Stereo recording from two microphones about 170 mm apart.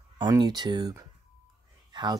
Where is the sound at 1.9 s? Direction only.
25° right (ahead or behind).